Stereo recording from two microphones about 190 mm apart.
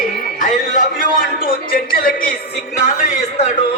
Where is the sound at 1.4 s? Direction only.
50° left (ahead or behind).